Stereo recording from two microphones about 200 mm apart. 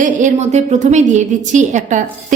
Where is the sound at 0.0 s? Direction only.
35° right (ahead or behind).